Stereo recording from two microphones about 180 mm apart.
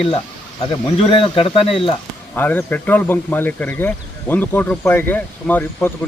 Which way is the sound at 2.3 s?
10° left (ahead or behind).